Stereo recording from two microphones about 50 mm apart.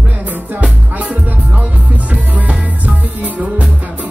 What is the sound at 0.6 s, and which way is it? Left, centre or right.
Music, right.